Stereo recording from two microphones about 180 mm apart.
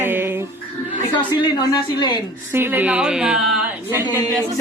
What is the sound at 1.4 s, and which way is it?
Speech, 25° left (ahead or behind).